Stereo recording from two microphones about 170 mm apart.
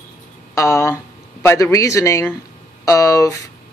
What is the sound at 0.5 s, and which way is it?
Speech, 15° left (ahead or behind).